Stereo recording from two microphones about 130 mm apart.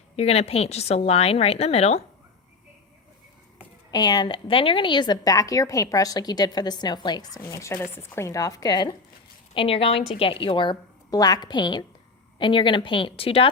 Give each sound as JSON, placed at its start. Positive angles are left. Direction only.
{"t": 0.2, "sound": "a woman's voice", "side_deg": 50}
{"t": 3.9, "sound": "speech", "side_deg": 35}
{"t": 9.6, "sound": "a woman's voice", "side_deg": 45}